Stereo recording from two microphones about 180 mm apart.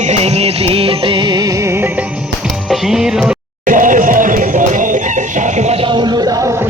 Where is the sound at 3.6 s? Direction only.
45° right (ahead or behind); by 6.7 s 15° right (ahead or behind).